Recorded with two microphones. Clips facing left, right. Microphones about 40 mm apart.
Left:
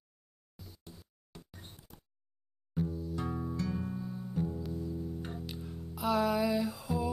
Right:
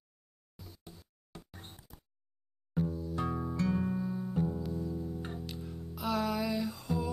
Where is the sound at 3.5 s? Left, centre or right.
Right.